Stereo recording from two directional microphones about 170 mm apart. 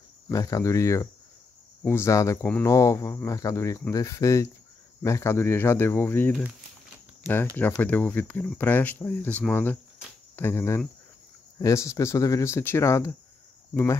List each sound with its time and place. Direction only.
0.3 s cricket: 20° left (ahead or behind)
1.8 s speech: 15° left (ahead or behind)
2.6 s cricket: 20° left (ahead or behind)
5.0 s speech: 15° left (ahead or behind)
10.3 s cricket: 15° left (ahead or behind)
11.5 s speech: 20° left (ahead or behind)